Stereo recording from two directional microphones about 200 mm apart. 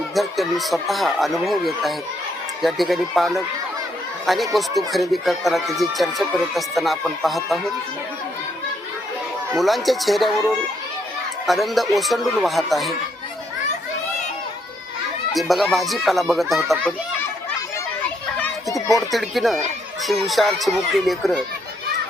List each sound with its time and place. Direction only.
0.1 s speech: centre (ahead or behind)
9.6 s speech: centre (ahead or behind)
11.4 s speech: centre (ahead or behind)
15.3 s speech: centre (ahead or behind)
18.3 s children playing: 10° left (ahead or behind)
19.1 s speech: centre (ahead or behind)